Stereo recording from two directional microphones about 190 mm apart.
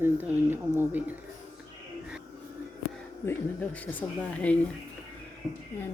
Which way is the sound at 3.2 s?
10° left (ahead or behind).